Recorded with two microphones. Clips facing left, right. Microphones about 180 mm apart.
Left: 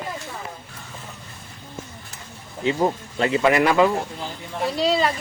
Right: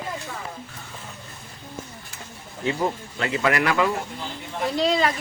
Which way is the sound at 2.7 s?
20° left (ahead or behind).